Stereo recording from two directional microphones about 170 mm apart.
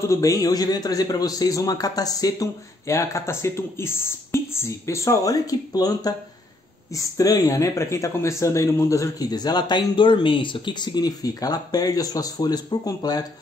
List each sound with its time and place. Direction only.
0.0 s speech: 20° left (ahead or behind)